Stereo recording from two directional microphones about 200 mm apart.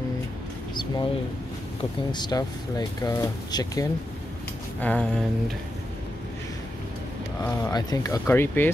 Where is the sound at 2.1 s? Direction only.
20° left (ahead or behind).